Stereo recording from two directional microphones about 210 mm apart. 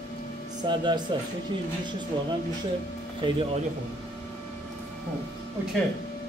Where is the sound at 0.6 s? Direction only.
20° right (ahead or behind).